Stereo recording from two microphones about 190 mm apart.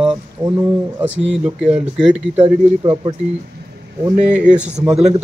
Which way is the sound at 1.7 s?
5° right (ahead or behind).